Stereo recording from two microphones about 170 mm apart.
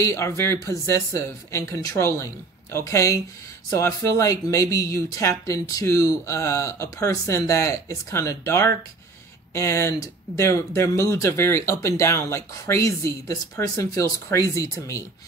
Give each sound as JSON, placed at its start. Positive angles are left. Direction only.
{"t": 0.0, "sound": "speech", "side_deg": 15}